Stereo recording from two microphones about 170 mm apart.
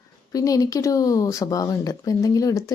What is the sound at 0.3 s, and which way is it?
Speech, 20° left (ahead or behind).